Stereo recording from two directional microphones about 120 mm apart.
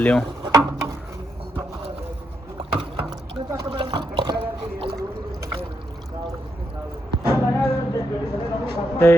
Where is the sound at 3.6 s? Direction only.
50° right (ahead or behind).